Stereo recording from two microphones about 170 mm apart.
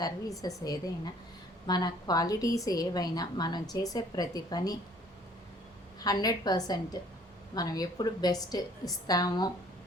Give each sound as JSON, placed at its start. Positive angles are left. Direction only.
{"t": 0.0, "sound": "a woman's voice", "side_deg": 20}
{"t": 6.0, "sound": "a woman's voice", "side_deg": 20}